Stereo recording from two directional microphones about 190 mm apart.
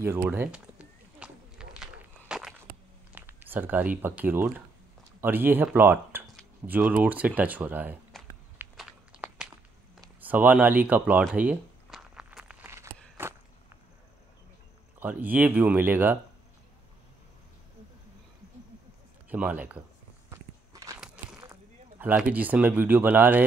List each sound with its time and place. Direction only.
0.0 s a sound: 10° right (ahead or behind)
4.2 s speech: 10° right (ahead or behind)
8.5 s walk: 5° right (ahead or behind)
10.2 s speech: 10° right (ahead or behind)
11.3 s a sound: 5° right (ahead or behind)
13.2 s walk: 10° right (ahead or behind)
15.0 s speech: 10° right (ahead or behind)
19.2 s a man's voice: 5° right (ahead or behind)
20.2 s walk: 15° right (ahead or behind)
21.4 s speech: 15° right (ahead or behind)